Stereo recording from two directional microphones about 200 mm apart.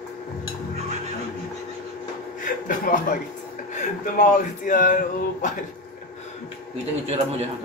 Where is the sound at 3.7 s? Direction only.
40° left (ahead or behind).